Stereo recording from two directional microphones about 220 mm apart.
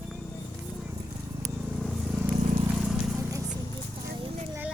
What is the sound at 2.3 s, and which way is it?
Vehicle, 30° right (ahead or behind).